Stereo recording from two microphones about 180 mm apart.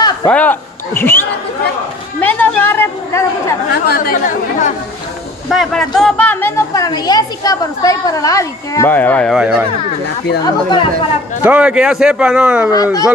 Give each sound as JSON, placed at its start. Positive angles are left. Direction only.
{"t": 0.3, "sound": "speech", "side_deg": 10}
{"t": 2.1, "sound": "chatter", "side_deg": 10}
{"t": 3.8, "sound": "speech", "side_deg": 55}
{"t": 5.5, "sound": "speech", "side_deg": 0}
{"t": 6.7, "sound": "a woman's voice", "side_deg": 20}
{"t": 9.4, "sound": "speech", "side_deg": -5}
{"t": 10.4, "sound": "a woman's voice", "side_deg": 25}
{"t": 11.4, "sound": "speech", "side_deg": -10}